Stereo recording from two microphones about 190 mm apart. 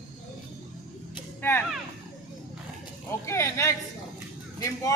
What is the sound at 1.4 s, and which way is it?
Speech, 10° left (ahead or behind).